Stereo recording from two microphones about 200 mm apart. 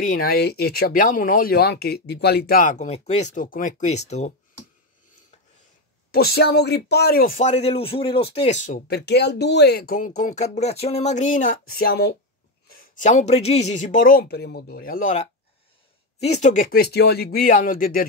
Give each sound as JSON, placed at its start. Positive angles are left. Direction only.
{"t": 0.0, "sound": "speech", "side_deg": 45}
{"t": 6.1, "sound": "speech", "side_deg": 55}